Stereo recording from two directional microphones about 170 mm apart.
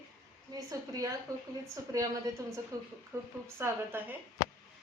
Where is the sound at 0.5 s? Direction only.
20° right (ahead or behind).